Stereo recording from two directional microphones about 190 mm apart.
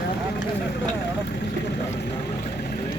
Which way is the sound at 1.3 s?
60° left (ahead or behind).